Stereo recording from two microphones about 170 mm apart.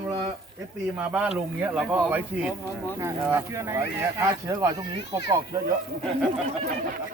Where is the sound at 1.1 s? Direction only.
10° right (ahead or behind).